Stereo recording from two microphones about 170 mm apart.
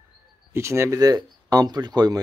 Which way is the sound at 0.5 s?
15° right (ahead or behind).